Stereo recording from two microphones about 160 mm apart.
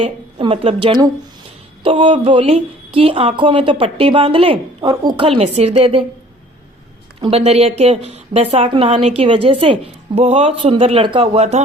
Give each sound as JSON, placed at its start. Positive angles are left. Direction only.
{"t": 0.0, "sound": "a woman's voice", "side_deg": -35}
{"t": 7.2, "sound": "a woman's voice", "side_deg": -35}